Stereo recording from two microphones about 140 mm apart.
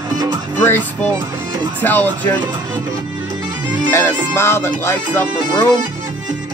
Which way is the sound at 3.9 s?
20° left (ahead or behind).